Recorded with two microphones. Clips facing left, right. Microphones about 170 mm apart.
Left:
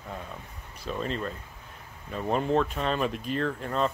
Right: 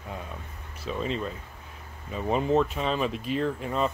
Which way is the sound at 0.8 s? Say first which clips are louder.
Right 1 dB; centre (ahead or behind).